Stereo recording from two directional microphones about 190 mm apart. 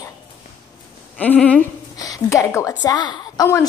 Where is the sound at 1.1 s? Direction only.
10° left (ahead or behind).